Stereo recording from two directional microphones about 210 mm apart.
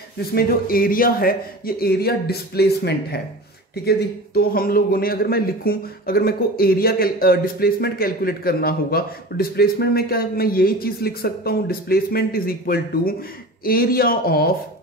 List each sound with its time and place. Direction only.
0.3 s a man's voice: 45° left (ahead or behind)